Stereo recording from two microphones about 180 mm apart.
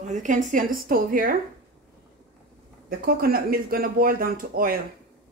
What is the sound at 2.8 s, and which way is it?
Speech, 55° right (ahead or behind).